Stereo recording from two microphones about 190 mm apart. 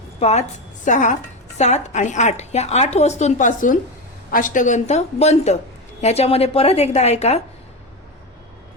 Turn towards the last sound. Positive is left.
turn(degrees=35)  # may be behind; listen again after turning